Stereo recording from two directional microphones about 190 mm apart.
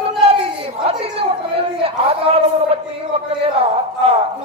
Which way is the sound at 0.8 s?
30° right (ahead or behind).